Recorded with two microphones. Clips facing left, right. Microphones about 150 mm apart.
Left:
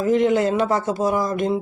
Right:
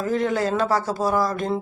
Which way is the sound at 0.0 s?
20° left (ahead or behind).